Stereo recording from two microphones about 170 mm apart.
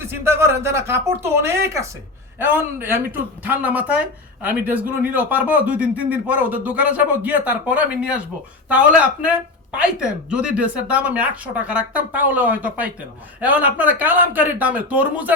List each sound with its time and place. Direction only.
0.0 s speech: 15° right (ahead or behind)